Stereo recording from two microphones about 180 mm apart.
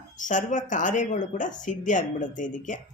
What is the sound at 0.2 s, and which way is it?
Speech, 45° left (ahead or behind).